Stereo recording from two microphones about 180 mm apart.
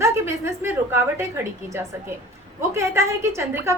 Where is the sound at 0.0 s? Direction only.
15° right (ahead or behind).